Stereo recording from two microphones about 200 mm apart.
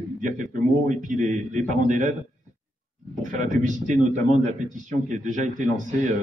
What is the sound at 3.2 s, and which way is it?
A man's voice, 40° right (ahead or behind).